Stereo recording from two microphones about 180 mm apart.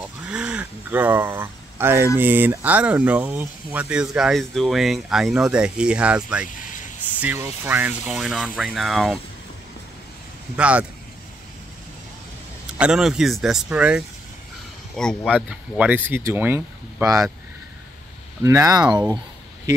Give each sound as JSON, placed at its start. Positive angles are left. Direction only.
{"t": 0.3, "sound": "a sound", "side_deg": -5}
{"t": 2.1, "sound": "speech", "side_deg": -10}
{"t": 10.5, "sound": "speech", "side_deg": -5}
{"t": 12.7, "sound": "speech", "side_deg": -5}
{"t": 15.3, "sound": "speech", "side_deg": -5}
{"t": 18.4, "sound": "speech", "side_deg": -20}